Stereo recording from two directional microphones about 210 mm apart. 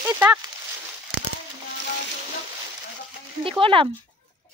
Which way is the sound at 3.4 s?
25° right (ahead or behind).